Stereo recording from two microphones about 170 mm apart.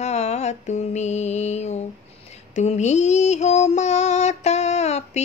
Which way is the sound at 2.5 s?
40° left (ahead or behind).